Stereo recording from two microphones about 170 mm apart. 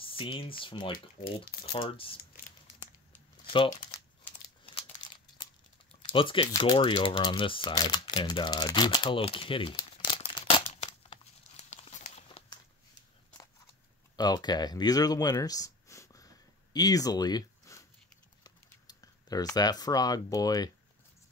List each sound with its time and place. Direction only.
0.0 s speech: 30° left (ahead or behind)
3.5 s speech: 30° left (ahead or behind)
4.7 s crumpling: 30° left (ahead or behind)
6.1 s speech: 30° left (ahead or behind)
11.7 s crumpling: 40° left (ahead or behind)
14.1 s speech: 25° left (ahead or behind)
18.4 s typing: 20° left (ahead or behind)